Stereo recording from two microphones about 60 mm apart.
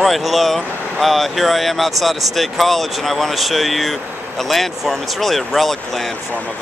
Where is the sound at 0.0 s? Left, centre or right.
Centre.